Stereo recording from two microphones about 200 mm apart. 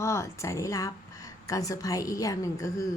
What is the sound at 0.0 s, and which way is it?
Speech, 15° left (ahead or behind).